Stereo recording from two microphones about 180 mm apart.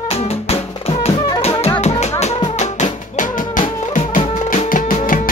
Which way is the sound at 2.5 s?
40° left (ahead or behind).